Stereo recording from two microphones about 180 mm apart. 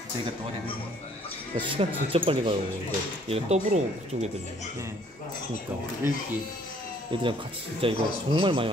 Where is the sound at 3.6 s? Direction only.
40° right (ahead or behind).